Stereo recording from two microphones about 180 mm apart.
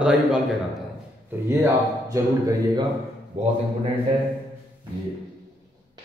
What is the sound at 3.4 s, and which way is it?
Speech, 40° right (ahead or behind).